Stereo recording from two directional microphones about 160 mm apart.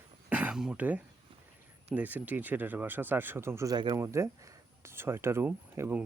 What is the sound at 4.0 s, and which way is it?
Speech, 15° right (ahead or behind).